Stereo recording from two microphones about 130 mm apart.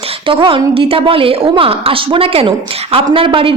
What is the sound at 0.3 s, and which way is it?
A woman's voice, 40° right (ahead or behind).